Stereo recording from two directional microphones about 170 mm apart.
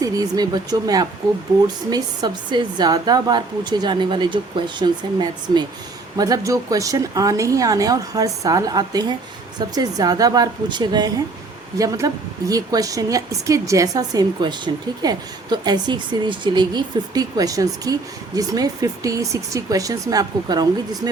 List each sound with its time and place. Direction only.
0.0 s a woman's voice: 20° right (ahead or behind)